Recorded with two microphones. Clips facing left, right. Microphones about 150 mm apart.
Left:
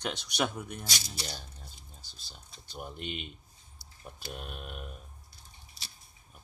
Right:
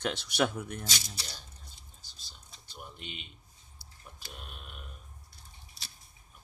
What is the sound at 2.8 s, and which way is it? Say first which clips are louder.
Speech: left 7 dB; 50° left (ahead or behind).